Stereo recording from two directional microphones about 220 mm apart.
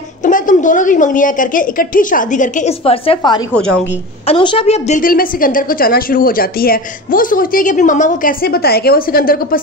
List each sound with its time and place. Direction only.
0.2 s a woman's voice: 35° left (ahead or behind)